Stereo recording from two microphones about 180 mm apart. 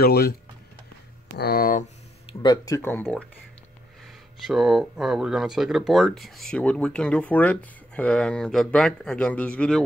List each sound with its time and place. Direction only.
0.0 s speech: 60° left (ahead or behind)
1.4 s speech: 55° left (ahead or behind)
2.2 s speech: 25° left (ahead or behind); by 3.3 s 10° left (ahead or behind)
4.4 s speech: centre (ahead or behind)